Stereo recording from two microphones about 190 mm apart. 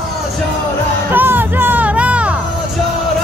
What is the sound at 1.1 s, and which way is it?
Music, 10° right (ahead or behind).